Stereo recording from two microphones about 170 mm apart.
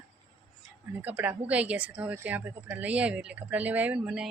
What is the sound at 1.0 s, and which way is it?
Speech, 10° right (ahead or behind).